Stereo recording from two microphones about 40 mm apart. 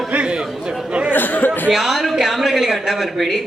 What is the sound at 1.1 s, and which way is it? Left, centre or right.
Speech, left.